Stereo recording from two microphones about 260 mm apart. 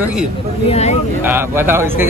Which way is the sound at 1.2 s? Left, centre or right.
Centre.